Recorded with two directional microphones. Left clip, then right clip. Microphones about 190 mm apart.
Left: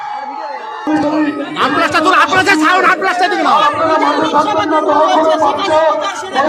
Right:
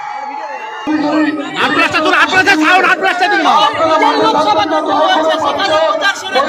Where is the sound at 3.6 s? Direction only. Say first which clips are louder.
Right 1 dB; 35° right (ahead or behind).